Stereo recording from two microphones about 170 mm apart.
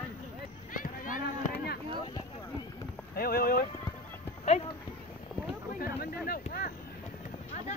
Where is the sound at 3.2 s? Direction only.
60° left (ahead or behind).